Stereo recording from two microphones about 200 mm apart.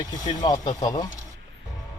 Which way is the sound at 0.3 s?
20° left (ahead or behind).